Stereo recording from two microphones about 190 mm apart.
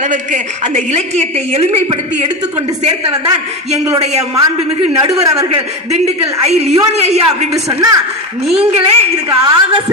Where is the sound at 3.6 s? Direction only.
35° right (ahead or behind).